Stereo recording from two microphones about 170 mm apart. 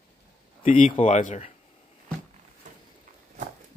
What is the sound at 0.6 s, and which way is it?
Speech, 50° left (ahead or behind).